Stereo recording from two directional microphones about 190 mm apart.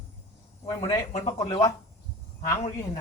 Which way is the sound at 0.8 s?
20° left (ahead or behind).